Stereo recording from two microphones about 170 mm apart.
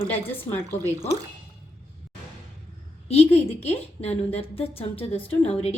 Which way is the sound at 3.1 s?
35° left (ahead or behind).